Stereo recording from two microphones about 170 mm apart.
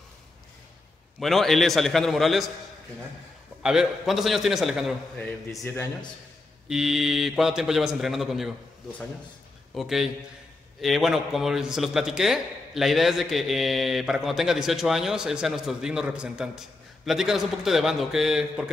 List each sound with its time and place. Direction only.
1.2 s a man's voice: centre (ahead or behind)
3.6 s a man's voice: 5° right (ahead or behind)
5.5 s speech: 20° left (ahead or behind)
6.7 s a man's voice: centre (ahead or behind)
9.8 s a man's voice: centre (ahead or behind)